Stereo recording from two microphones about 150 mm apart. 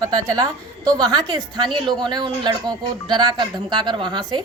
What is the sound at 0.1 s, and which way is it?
A woman's voice, 25° right (ahead or behind).